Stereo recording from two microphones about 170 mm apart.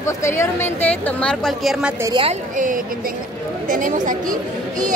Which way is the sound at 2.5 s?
50° right (ahead or behind).